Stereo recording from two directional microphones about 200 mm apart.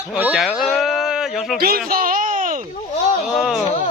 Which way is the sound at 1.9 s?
45° right (ahead or behind).